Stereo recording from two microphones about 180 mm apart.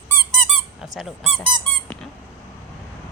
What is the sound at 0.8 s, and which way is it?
Speech, centre (ahead or behind).